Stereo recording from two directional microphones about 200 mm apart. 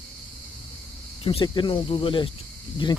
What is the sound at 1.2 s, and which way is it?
Speech, 25° left (ahead or behind).